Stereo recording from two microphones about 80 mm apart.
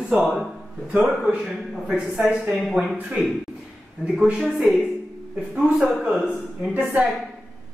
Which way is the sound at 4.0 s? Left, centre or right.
Centre.